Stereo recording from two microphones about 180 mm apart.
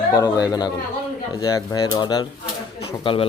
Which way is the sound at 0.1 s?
20° left (ahead or behind).